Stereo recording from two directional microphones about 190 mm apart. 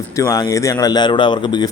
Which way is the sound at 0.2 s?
20° left (ahead or behind).